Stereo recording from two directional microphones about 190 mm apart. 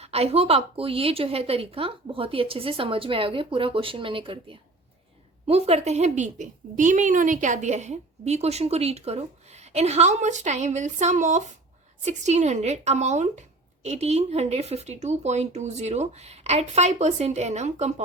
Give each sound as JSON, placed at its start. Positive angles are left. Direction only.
{"t": 0.0, "sound": "a woman's voice", "side_deg": -30}